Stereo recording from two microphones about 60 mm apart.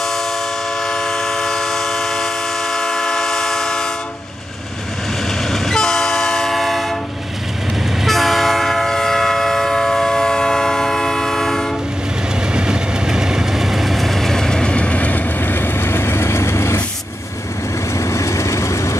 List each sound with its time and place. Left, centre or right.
0.8 s train: centre
5.5 s train: centre
8.0 s train: centre
12.5 s vehicle: centre; by 16.8 s left
17.9 s vehicle: left